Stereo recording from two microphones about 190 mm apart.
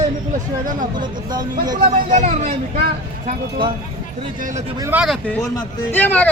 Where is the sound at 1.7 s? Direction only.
40° right (ahead or behind).